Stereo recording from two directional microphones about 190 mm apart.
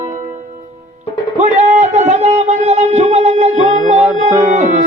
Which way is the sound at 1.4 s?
40° right (ahead or behind).